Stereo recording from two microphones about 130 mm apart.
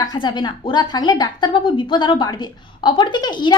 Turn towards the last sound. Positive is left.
turn(degrees=35)  # may be behind; listen again after turning